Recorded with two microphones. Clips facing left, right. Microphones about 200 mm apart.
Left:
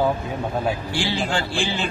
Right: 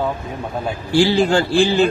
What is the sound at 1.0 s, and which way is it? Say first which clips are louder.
Speech: right 10 dB; 40° right (ahead or behind).